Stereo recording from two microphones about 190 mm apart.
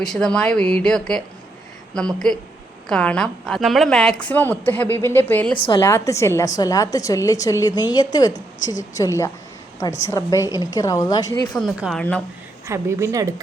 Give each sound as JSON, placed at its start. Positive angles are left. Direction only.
{"t": 0.0, "sound": "a woman's voice", "side_deg": 5}
{"t": 11.5, "sound": "speech", "side_deg": 0}
{"t": 12.6, "sound": "a woman's voice", "side_deg": -15}